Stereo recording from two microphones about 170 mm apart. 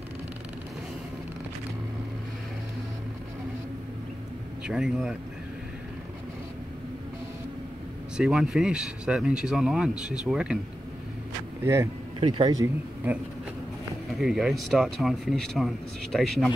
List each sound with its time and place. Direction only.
4.6 s speech: 5° right (ahead or behind)
8.2 s speech: 5° right (ahead or behind)
11.6 s speech: 15° right (ahead or behind)
12.2 s speech: 30° right (ahead or behind)
12.6 s speech: 10° right (ahead or behind)